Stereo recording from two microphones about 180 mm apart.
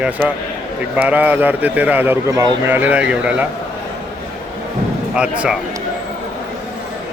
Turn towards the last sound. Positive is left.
turn(degrees=-5)  # may be behind; listen again after turning